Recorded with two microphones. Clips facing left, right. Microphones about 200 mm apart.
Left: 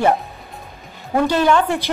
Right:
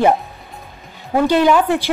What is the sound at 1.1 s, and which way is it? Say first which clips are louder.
Speech: right 2 dB; 10° right (ahead or behind).